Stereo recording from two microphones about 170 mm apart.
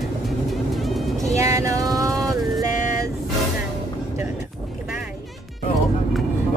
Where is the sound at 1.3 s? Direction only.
20° right (ahead or behind).